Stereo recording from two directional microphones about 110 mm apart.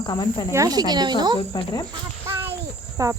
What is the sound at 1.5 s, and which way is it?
Speech, 50° left (ahead or behind).